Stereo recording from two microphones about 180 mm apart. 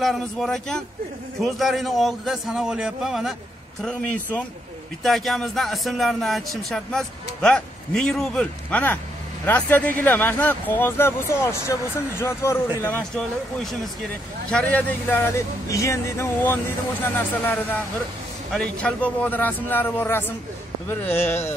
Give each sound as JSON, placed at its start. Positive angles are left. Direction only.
{"t": 0.0, "sound": "speech", "side_deg": 0}
{"t": 5.0, "sound": "speech", "side_deg": 0}